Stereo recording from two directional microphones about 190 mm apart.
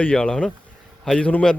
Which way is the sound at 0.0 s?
5° left (ahead or behind).